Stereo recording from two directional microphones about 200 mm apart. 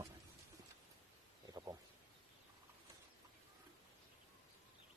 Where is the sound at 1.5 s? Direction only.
20° right (ahead or behind).